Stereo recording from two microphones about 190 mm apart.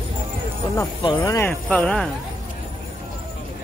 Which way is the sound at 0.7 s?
20° left (ahead or behind).